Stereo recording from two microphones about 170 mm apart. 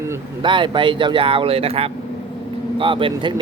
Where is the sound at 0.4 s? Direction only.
30° right (ahead or behind).